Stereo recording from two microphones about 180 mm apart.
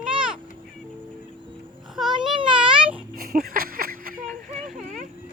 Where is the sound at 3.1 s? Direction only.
55° right (ahead or behind).